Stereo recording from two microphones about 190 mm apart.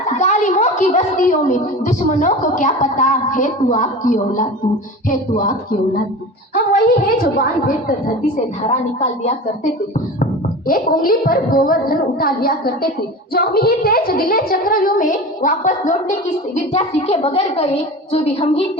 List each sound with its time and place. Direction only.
0.2 s a woman's voice: 40° left (ahead or behind)
8.6 s a woman's voice: 35° left (ahead or behind)
10.7 s a woman's voice: 45° left (ahead or behind); by 18.6 s 30° left (ahead or behind)